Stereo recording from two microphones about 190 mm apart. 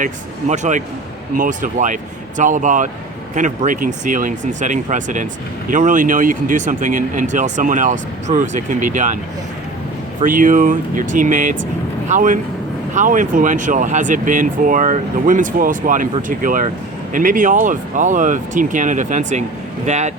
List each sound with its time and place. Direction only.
0.0 s speech: 40° right (ahead or behind)
10.2 s speech: 45° right (ahead or behind)